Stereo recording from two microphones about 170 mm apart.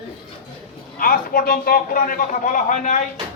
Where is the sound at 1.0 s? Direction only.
55° left (ahead or behind).